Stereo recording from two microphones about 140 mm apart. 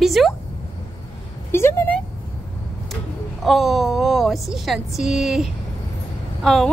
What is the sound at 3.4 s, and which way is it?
A woman's voice, centre (ahead or behind).